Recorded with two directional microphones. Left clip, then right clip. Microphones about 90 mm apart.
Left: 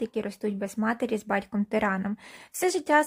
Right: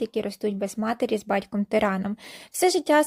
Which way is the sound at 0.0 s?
35° right (ahead or behind).